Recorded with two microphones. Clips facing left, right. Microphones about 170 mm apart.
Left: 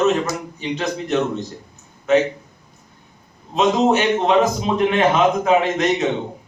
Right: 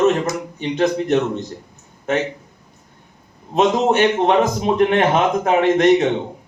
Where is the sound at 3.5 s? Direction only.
55° right (ahead or behind).